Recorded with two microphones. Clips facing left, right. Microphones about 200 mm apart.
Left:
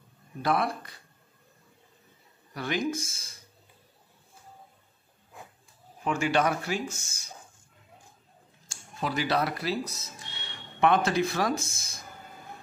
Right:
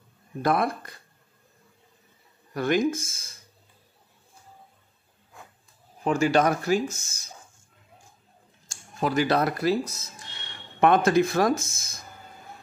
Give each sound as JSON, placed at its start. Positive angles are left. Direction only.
{"t": 0.4, "sound": "speech", "side_deg": -50}
{"t": 2.5, "sound": "speech", "side_deg": -50}
{"t": 6.0, "sound": "speech", "side_deg": -40}
{"t": 8.6, "sound": "speech", "side_deg": -50}